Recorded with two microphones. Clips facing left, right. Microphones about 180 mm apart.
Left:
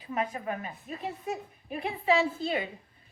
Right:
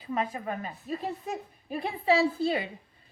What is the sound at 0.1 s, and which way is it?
A woman's voice, 30° right (ahead or behind).